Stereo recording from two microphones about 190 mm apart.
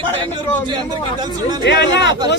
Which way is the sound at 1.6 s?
60° left (ahead or behind).